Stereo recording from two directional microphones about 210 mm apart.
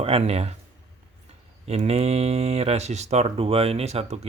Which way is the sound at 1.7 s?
30° right (ahead or behind).